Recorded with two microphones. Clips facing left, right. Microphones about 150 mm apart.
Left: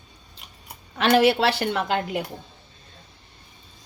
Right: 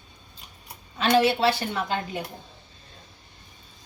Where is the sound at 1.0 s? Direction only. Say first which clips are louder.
Left 2 dB; 70° left (ahead or behind).